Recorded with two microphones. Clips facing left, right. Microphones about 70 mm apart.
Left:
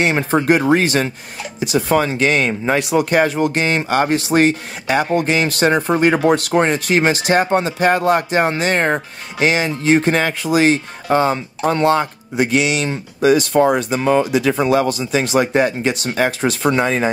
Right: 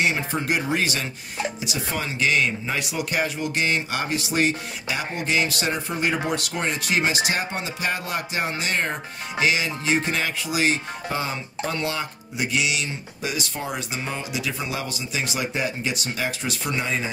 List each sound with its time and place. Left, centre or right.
0.0 s speech: left